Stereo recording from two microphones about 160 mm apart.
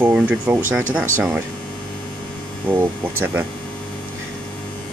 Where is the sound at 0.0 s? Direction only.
10° right (ahead or behind).